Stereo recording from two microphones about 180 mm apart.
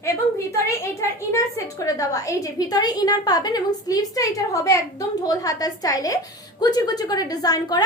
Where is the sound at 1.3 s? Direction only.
15° left (ahead or behind).